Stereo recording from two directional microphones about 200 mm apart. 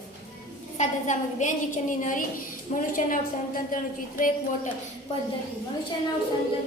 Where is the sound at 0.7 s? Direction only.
35° left (ahead or behind).